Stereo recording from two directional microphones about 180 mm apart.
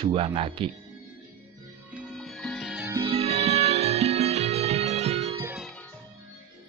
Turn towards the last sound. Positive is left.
turn(degrees=-35)  # may be behind; listen again after turning